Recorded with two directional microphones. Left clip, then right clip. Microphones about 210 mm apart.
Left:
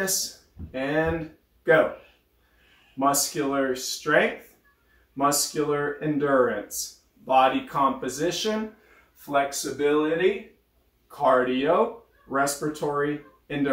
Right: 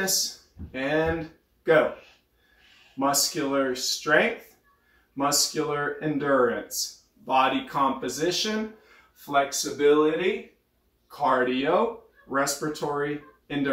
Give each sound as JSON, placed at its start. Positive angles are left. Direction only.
{"t": 0.0, "sound": "speech", "side_deg": 0}
{"t": 3.0, "sound": "speech", "side_deg": 0}